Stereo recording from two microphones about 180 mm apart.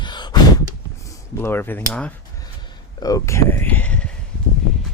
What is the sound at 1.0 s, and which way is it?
Speech, 15° left (ahead or behind).